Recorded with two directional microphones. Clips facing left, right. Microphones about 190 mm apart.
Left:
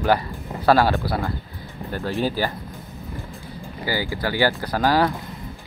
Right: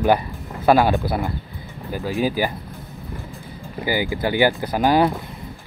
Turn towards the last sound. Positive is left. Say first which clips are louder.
# right 2 dB
turn(degrees=-20)  # may be behind; listen again after turning